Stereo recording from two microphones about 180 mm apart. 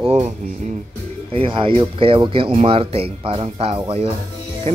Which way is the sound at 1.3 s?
30° right (ahead or behind).